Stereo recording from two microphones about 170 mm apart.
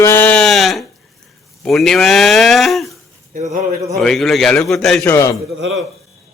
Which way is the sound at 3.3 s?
45° right (ahead or behind).